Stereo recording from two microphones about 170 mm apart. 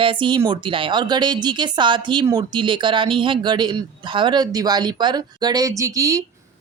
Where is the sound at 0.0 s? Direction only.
30° right (ahead or behind).